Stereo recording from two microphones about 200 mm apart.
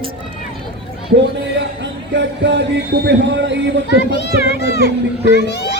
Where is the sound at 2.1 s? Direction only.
60° right (ahead or behind).